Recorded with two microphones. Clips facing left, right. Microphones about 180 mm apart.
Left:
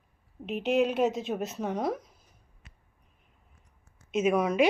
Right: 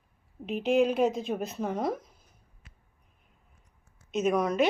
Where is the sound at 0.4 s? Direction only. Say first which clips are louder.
Right 1 dB; centre (ahead or behind).